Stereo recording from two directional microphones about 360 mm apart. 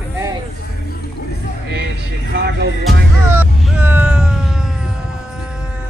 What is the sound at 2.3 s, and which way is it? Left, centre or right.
Speech, right.